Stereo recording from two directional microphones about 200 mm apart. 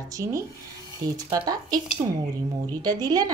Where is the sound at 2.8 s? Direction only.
20° right (ahead or behind).